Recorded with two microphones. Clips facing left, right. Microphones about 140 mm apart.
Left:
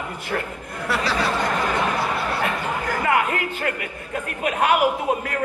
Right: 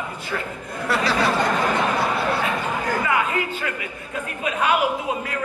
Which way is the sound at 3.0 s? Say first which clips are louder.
Left 1 dB; 60° left (ahead or behind).